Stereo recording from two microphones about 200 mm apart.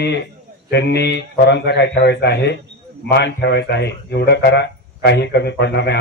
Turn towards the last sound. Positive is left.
turn(degrees=55)  # may be behind; listen again after turning